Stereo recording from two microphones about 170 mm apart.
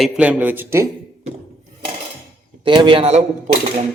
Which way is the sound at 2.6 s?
30° right (ahead or behind).